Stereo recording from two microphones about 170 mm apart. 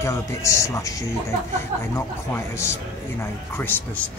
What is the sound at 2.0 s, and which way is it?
Speech, 15° left (ahead or behind).